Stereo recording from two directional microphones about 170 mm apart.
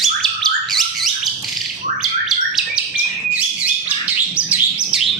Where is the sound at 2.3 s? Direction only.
Centre (ahead or behind).